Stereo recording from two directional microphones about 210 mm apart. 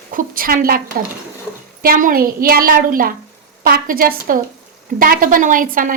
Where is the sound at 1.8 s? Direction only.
45° right (ahead or behind).